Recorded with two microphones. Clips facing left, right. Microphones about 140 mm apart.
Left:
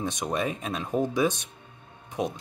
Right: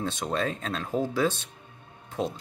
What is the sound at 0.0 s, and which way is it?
Speech, 15° left (ahead or behind).